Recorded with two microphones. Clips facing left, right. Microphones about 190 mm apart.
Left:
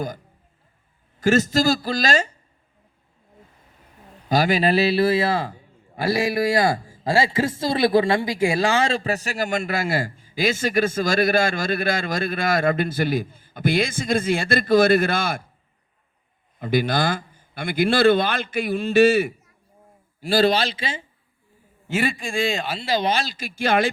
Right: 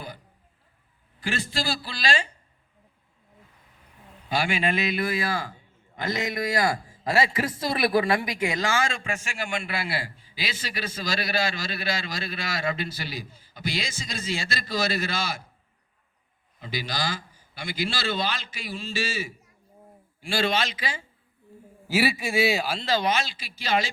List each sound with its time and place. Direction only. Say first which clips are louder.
1.2 s a man's voice: left 12 dB; 45° left (ahead or behind)
4.3 s a man's voice: left 7 dB; 40° left (ahead or behind); by 15.4 s 55° left (ahead or behind)
16.6 s a man's voice: left 11 dB; 55° left (ahead or behind)
20.2 s a man's voice: left 7 dB; 40° left (ahead or behind)
21.8 s a man's voice: even; 5° right (ahead or behind)
23.0 s a man's voice: left 3 dB; 35° left (ahead or behind); by 23.9 s 55° left (ahead or behind)